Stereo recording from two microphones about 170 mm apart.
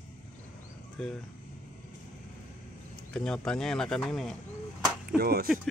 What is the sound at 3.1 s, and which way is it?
Speech, 5° left (ahead or behind).